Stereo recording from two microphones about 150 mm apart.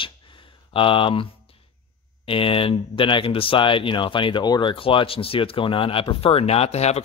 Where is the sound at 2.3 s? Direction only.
35° left (ahead or behind).